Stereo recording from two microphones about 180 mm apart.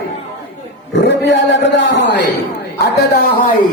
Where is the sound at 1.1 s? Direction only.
80° left.